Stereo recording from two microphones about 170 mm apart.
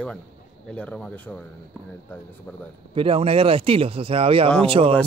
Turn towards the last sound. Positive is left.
turn(degrees=-35)  # may be behind; listen again after turning